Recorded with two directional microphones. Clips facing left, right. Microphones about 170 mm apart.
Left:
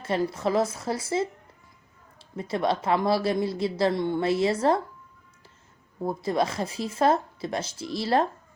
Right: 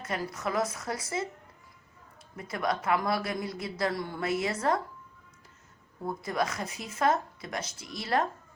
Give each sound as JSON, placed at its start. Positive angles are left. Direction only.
{"t": 0.0, "sound": "speech", "side_deg": 30}
{"t": 2.3, "sound": "speech", "side_deg": 30}
{"t": 6.0, "sound": "speech", "side_deg": 30}